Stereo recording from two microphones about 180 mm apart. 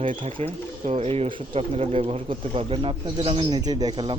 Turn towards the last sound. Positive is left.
turn(degrees=-25)  # may be behind; listen again after turning